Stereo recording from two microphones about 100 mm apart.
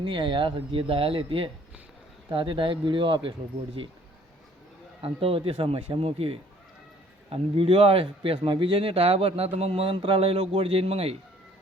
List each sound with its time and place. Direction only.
0.0 s speech: 60° right (ahead or behind)
5.0 s speech: 70° right (ahead or behind); by 11.2 s 85° right